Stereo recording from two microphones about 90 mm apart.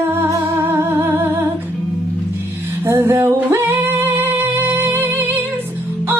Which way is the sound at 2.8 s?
25° right (ahead or behind).